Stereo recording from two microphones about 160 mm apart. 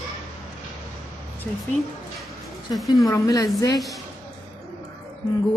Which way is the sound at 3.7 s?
Centre (ahead or behind).